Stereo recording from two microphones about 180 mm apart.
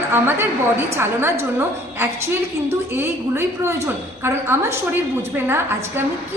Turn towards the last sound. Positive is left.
turn(degrees=-10)  # may be behind; listen again after turning